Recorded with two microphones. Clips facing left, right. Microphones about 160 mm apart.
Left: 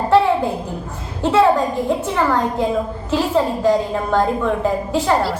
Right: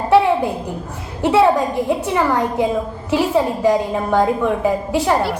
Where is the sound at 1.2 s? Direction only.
15° right (ahead or behind).